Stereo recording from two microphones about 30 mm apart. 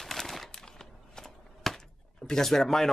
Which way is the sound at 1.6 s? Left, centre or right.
Centre.